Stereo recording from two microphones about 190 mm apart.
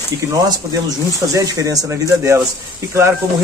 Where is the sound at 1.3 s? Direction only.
15° right (ahead or behind).